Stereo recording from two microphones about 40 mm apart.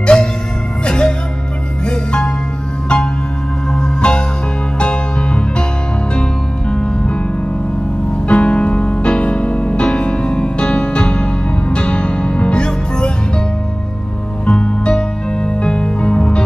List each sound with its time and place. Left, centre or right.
0.0 s music: left
3.7 s music: left
6.7 s music: left
8.3 s music: left
14.4 s music: left